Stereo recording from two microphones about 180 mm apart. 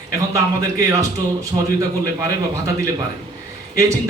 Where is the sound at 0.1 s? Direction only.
15° right (ahead or behind).